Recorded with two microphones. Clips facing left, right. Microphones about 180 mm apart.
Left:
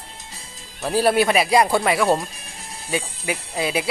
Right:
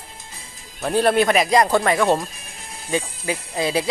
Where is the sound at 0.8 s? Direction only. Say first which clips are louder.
Right 1 dB; 5° left (ahead or behind).